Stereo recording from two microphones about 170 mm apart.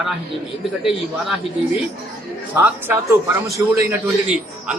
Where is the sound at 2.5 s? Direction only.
10° right (ahead or behind).